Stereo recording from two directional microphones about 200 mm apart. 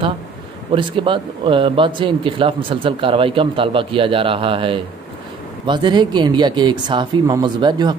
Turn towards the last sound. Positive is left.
turn(degrees=-20)  # may be behind; listen again after turning